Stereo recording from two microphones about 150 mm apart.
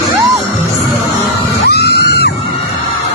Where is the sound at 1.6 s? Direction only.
90° left.